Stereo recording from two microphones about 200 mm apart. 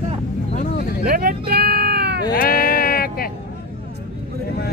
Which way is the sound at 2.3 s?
45° left (ahead or behind).